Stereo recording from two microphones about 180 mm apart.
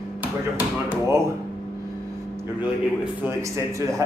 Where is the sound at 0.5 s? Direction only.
10° right (ahead or behind).